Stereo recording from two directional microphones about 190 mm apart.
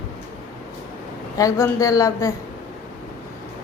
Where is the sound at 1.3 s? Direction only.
15° left (ahead or behind).